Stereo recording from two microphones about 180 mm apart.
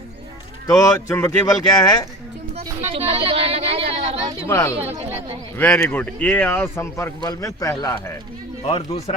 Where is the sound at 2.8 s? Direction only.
30° right (ahead or behind).